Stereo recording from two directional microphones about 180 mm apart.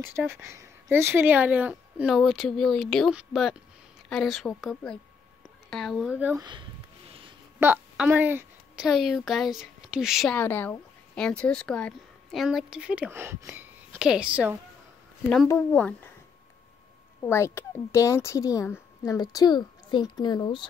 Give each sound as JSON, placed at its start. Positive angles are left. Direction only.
{"t": 0.1, "sound": "speech", "side_deg": -15}
{"t": 6.3, "sound": "a sound", "side_deg": -25}
{"t": 7.6, "sound": "speech", "side_deg": -10}
{"t": 10.3, "sound": "speech", "side_deg": 10}
{"t": 15.4, "sound": "speech", "side_deg": 10}
{"t": 17.2, "sound": "speech", "side_deg": 15}